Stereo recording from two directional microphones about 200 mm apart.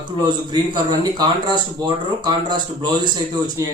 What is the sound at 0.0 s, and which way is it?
Speech, 20° right (ahead or behind).